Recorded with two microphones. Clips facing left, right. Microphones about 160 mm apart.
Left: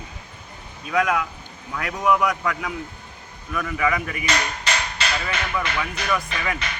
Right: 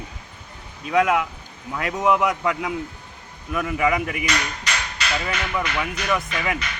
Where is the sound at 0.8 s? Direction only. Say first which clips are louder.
Right 3 dB; 25° right (ahead or behind).